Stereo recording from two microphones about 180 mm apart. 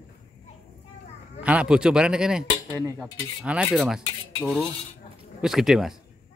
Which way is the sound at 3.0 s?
5° right (ahead or behind).